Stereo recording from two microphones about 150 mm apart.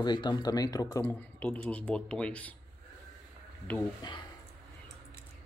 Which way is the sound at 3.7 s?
10° left (ahead or behind).